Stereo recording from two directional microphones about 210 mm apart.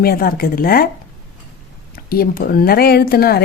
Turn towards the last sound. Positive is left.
turn(degrees=45)  # may be behind; listen again after turning